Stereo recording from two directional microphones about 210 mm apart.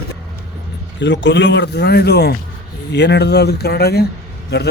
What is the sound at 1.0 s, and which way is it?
Speech, 55° left (ahead or behind).